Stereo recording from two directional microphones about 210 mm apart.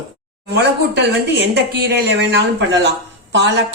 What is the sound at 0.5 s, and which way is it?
Speech, 50° right (ahead or behind).